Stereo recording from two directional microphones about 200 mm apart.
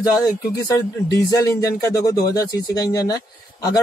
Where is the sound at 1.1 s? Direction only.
15° left (ahead or behind).